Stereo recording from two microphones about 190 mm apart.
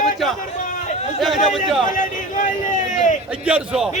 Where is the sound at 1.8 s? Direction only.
45° left (ahead or behind).